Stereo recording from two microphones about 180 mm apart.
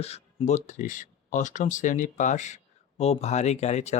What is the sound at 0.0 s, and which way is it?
Speech, 35° left (ahead or behind).